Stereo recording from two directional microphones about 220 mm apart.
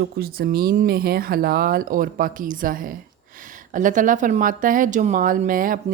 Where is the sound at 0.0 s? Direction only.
45° right (ahead or behind).